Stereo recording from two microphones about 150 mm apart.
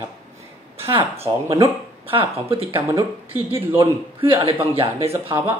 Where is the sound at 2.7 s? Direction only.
15° right (ahead or behind).